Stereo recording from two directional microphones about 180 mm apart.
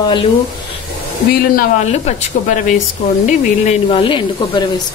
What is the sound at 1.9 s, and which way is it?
Speech, 40° left (ahead or behind).